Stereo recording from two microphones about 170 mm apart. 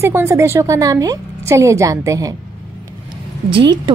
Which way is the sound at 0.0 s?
15° right (ahead or behind).